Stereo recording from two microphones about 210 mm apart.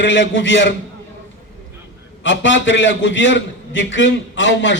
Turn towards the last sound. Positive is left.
turn(degrees=60)  # may be behind; listen again after turning